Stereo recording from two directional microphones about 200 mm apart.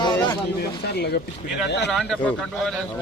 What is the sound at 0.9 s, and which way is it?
Speech, 55° left (ahead or behind).